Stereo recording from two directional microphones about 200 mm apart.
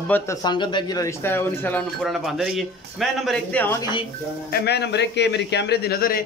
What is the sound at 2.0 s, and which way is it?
Speech, centre (ahead or behind).